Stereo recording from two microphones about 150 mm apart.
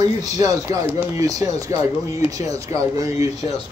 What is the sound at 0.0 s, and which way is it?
Speech, 25° right (ahead or behind).